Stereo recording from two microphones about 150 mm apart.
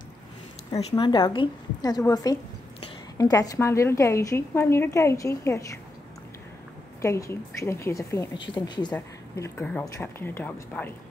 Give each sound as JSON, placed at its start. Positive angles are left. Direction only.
{"t": 0.7, "sound": "a woman's voice", "side_deg": 35}
{"t": 7.0, "sound": "a woman's voice", "side_deg": 20}
{"t": 8.9, "sound": "speech", "side_deg": 10}